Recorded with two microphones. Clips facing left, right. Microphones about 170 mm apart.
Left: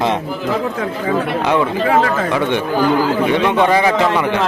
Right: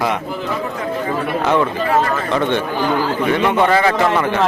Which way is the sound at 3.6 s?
15° left (ahead or behind).